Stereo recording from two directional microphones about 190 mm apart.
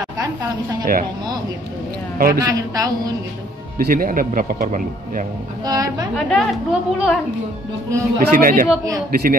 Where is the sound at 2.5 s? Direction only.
20° right (ahead or behind).